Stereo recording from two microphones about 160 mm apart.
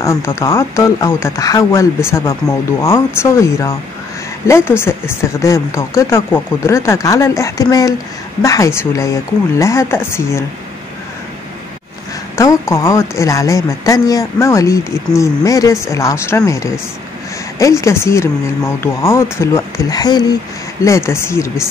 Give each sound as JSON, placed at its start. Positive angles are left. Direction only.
{"t": 0.0, "sound": "speech", "side_deg": 15}
{"t": 12.4, "sound": "a woman's voice", "side_deg": 20}